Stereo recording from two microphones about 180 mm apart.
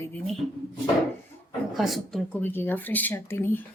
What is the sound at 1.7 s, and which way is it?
Speech, centre (ahead or behind).